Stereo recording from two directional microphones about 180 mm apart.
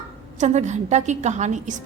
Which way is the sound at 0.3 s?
40° right (ahead or behind).